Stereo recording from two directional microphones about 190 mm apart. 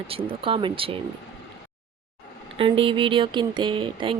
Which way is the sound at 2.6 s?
25° right (ahead or behind).